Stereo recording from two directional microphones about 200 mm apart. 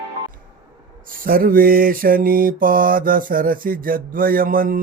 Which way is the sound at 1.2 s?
45° right (ahead or behind).